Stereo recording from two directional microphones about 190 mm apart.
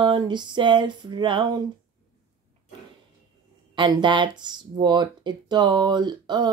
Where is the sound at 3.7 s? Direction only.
25° right (ahead or behind).